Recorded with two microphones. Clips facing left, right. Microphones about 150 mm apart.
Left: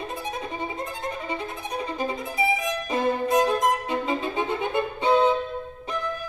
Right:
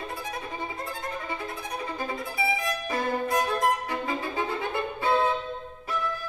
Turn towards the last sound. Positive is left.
turn(degrees=20)  # may be behind; listen again after turning